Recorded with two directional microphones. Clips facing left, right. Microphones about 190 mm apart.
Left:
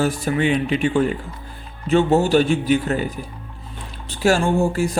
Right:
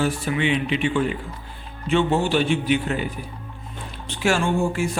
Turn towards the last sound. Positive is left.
turn(degrees=40)  # may be behind; listen again after turning